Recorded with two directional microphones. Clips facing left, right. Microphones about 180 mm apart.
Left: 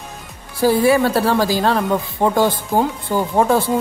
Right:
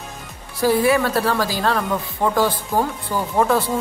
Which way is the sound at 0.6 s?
30° left (ahead or behind).